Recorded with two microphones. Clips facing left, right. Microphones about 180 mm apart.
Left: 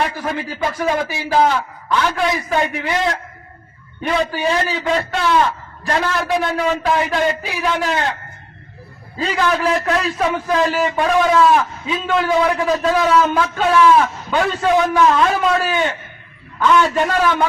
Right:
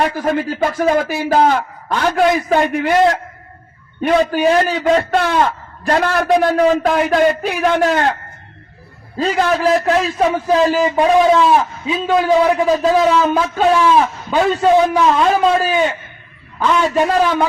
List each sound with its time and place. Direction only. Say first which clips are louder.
0.0 s speech: right 5 dB; 50° right (ahead or behind)
9.1 s a man's voice: right 3 dB; 40° right (ahead or behind)
17.1 s a man's voice: right 2 dB; 30° right (ahead or behind)